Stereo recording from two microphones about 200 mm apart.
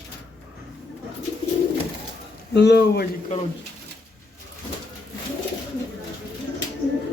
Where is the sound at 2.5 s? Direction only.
55° left (ahead or behind).